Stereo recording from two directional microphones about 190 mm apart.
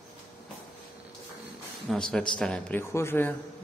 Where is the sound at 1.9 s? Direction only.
Centre (ahead or behind).